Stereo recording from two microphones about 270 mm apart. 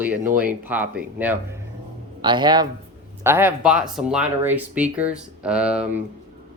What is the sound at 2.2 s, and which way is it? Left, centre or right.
Speech, centre.